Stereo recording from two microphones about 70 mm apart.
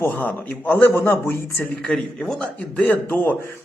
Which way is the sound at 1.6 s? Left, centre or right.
Centre.